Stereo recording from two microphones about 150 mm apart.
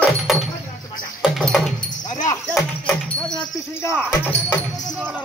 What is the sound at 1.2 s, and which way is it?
Dog, 5° left (ahead or behind).